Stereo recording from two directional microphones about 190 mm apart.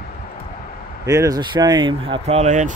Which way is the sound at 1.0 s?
20° right (ahead or behind).